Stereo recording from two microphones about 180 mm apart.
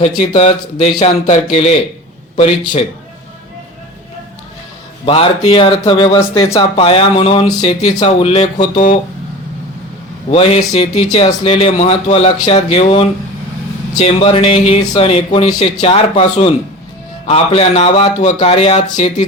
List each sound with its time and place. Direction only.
0.0 s speech: 35° left (ahead or behind)
5.0 s speech: 30° left (ahead or behind)
10.3 s speech: 30° left (ahead or behind)